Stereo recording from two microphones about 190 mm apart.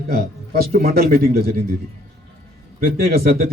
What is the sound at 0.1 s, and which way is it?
Speech, 55° right (ahead or behind).